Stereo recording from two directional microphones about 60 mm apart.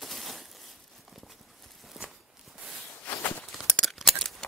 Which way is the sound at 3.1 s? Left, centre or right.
Left.